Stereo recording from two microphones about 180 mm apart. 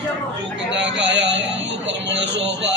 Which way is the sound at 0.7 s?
80° right.